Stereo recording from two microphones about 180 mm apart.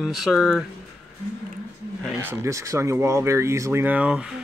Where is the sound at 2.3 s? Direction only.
15° right (ahead or behind).